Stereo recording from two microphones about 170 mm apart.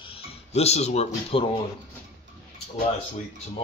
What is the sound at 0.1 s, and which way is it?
Speech, 40° left (ahead or behind).